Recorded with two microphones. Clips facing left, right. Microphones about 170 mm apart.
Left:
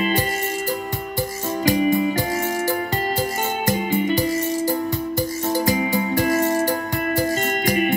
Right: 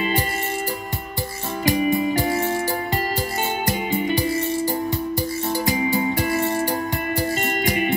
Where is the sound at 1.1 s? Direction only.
40° left (ahead or behind).